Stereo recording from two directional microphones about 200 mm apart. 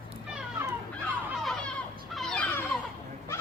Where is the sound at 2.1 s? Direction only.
5° left (ahead or behind).